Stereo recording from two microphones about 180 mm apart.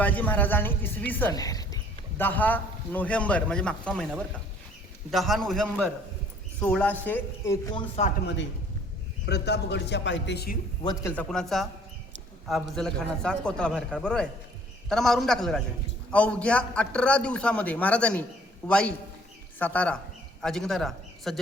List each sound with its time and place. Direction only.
0.0 s a woman's voice: 10° left (ahead or behind)
5.1 s a man's voice: centre (ahead or behind); by 7.9 s 20° left (ahead or behind)
9.2 s a man's voice: 70° left (ahead or behind)
11.1 s a man's voice: 5° left (ahead or behind)